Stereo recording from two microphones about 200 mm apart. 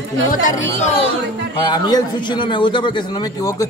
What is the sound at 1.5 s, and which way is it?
A man's voice, 20° left (ahead or behind).